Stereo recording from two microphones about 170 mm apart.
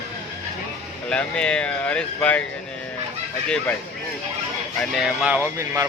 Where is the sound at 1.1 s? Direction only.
5° left (ahead or behind).